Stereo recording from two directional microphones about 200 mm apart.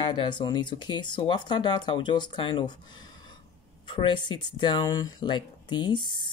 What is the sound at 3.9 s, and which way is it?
Speech, 25° left (ahead or behind).